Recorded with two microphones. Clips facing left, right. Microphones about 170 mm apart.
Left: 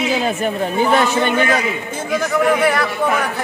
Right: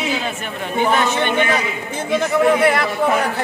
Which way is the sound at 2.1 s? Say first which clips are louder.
Right 1 dB; 25° right (ahead or behind).